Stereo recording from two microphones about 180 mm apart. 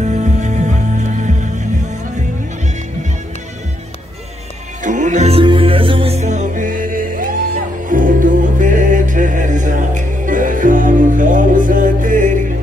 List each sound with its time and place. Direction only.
0.0 s music: 40° right (ahead or behind)
4.8 s music: 45° right (ahead or behind)